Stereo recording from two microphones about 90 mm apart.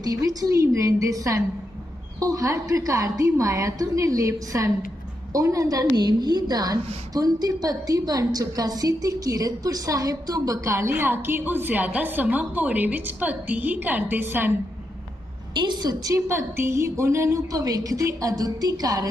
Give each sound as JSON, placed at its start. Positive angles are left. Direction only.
{"t": 0.0, "sound": "a woman's voice", "side_deg": -40}
{"t": 15.5, "sound": "a woman's voice", "side_deg": -55}
{"t": 16.1, "sound": "a woman's voice", "side_deg": -30}